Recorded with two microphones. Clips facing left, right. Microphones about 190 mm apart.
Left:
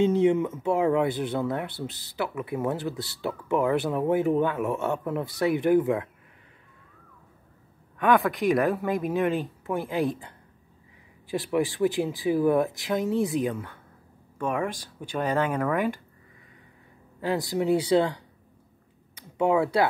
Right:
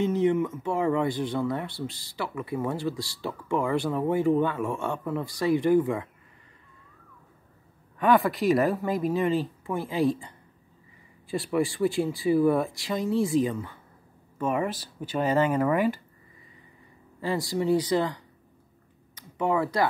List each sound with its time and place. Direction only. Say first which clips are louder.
0.0 s speech: left 2 dB; 15° left (ahead or behind)
8.0 s speech: even; centre (ahead or behind)
17.2 s speech: left 1 dB; centre (ahead or behind)
19.1 s speech: left 3 dB; 10° left (ahead or behind)